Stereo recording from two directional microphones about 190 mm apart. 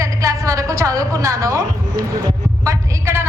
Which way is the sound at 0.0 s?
15° right (ahead or behind).